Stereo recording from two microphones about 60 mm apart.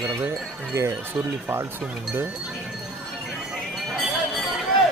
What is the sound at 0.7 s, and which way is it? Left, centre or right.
Speech, right.